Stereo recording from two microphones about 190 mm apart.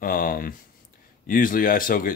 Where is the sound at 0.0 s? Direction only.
50° left (ahead or behind).